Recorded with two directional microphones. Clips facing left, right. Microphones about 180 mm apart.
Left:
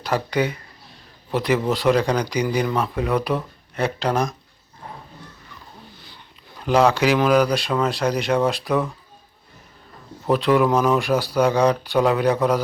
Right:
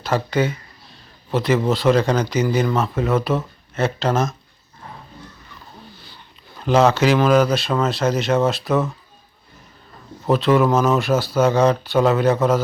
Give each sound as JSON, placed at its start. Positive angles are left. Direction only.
{"t": 0.0, "sound": "speech", "side_deg": 15}
{"t": 6.6, "sound": "speech", "side_deg": 10}
{"t": 10.2, "sound": "speech", "side_deg": 15}